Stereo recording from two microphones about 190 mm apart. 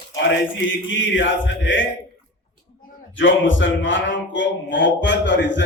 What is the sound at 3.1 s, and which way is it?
A man's voice, 80° left.